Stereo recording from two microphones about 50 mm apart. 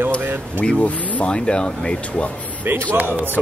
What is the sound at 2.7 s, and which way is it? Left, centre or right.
Speech, right.